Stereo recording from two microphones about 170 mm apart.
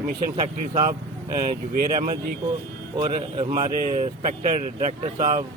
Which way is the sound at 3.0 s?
35° right (ahead or behind).